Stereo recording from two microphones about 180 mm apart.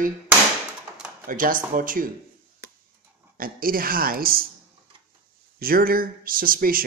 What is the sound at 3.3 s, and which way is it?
Speech, 50° right (ahead or behind).